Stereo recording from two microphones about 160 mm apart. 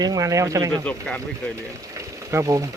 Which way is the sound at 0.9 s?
10° left (ahead or behind).